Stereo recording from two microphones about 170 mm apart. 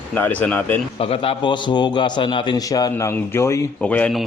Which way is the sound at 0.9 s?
35° left (ahead or behind).